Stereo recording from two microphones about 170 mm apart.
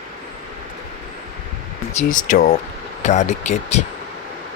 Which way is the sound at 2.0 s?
50° left (ahead or behind).